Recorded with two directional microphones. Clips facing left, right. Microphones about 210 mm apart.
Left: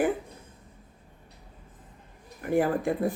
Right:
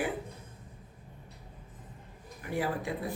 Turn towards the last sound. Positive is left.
turn(degrees=50)  # may be behind; listen again after turning